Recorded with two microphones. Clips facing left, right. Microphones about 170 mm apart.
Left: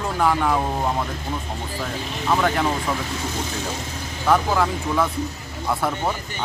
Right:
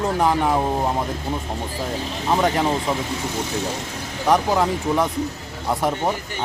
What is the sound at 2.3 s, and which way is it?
Speech, 20° right (ahead or behind).